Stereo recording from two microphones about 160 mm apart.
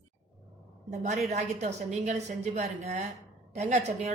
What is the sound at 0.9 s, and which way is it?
A woman's voice, 50° right (ahead or behind).